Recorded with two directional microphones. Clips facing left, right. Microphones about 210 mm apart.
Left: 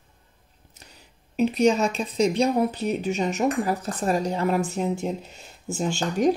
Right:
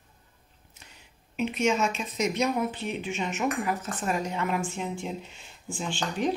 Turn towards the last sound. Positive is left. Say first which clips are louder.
# left 7 dB
turn(degrees=45)  # may be behind; listen again after turning